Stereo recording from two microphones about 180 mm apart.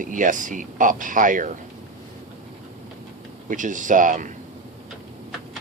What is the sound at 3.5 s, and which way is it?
Speech, 45° right (ahead or behind).